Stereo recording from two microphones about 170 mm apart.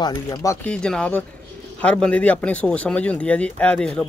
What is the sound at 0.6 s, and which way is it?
Speech, 5° left (ahead or behind).